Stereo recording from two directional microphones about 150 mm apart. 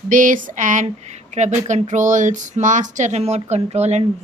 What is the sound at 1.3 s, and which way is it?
Speech, 50° right (ahead or behind).